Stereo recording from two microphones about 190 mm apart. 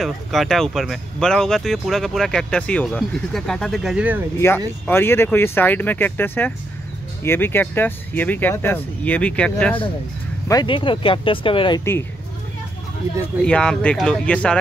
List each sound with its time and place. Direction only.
0.0 s speech: centre (ahead or behind)
4.4 s speech: 15° left (ahead or behind)
10.5 s speech: 25° left (ahead or behind)
13.4 s speech: 5° left (ahead or behind)